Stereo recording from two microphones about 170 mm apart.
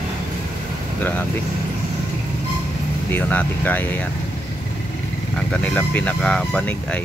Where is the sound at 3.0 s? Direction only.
10° left (ahead or behind).